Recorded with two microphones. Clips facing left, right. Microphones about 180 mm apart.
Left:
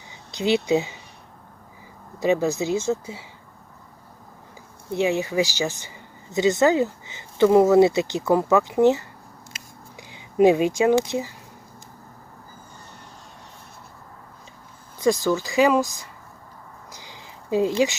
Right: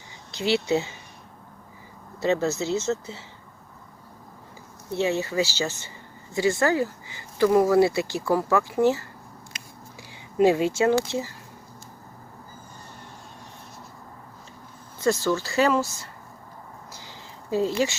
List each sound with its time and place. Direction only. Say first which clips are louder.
0.3 s speech: left 3 dB; 15° left (ahead or behind)
2.1 s speech: left 3 dB; 15° left (ahead or behind)
4.9 s speech: left 2 dB; 15° left (ahead or behind)
14.9 s speech: left 2 dB; 15° left (ahead or behind)
16.9 s a sound: even; 15° left (ahead or behind)